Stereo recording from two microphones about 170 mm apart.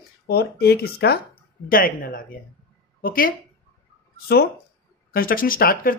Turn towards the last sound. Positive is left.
turn(degrees=60)  # may be behind; listen again after turning